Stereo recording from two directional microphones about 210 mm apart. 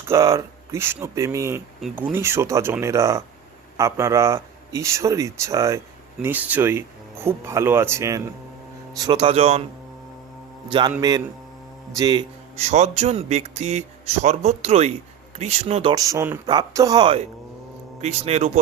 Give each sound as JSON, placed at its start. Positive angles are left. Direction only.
{"t": 0.1, "sound": "speech", "side_deg": -15}
{"t": 1.8, "sound": "speech", "side_deg": 0}
{"t": 2.1, "sound": "speech", "side_deg": -10}
{"t": 10.7, "sound": "speech", "side_deg": -20}
{"t": 12.5, "sound": "speech", "side_deg": -30}